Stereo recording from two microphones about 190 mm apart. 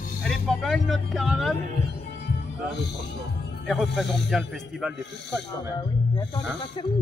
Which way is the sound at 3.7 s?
Centre (ahead or behind).